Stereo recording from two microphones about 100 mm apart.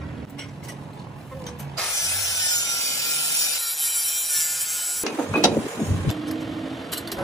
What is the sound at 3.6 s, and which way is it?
Music, centre (ahead or behind).